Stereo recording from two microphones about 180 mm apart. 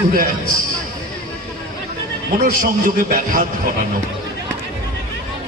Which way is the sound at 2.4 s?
50° right (ahead or behind).